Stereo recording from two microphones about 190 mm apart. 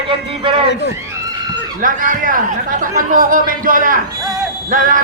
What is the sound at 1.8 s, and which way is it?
A man's voice, 45° right (ahead or behind).